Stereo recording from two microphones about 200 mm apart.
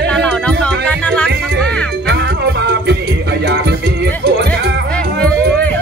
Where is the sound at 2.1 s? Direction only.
55° right (ahead or behind).